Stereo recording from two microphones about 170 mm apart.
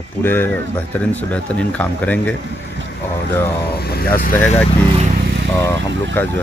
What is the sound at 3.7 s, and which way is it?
Speech, 65° left (ahead or behind).